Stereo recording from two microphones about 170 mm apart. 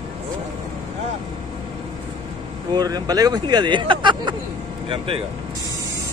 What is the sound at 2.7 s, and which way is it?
Speech, 25° right (ahead or behind).